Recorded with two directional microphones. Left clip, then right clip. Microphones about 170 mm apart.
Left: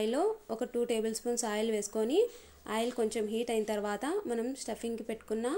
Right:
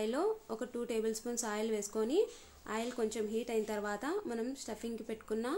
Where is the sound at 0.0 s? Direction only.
15° left (ahead or behind).